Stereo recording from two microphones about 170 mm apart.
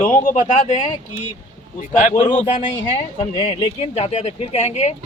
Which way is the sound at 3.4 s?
40° left (ahead or behind).